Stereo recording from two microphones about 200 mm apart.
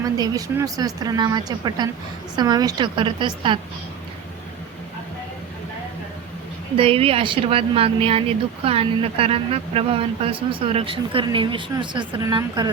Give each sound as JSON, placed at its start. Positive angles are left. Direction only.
{"t": 0.2, "sound": "speech", "side_deg": -15}
{"t": 6.7, "sound": "speech", "side_deg": -30}